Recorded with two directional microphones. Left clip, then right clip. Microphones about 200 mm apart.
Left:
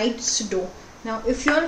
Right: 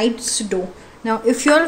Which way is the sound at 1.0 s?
50° right (ahead or behind).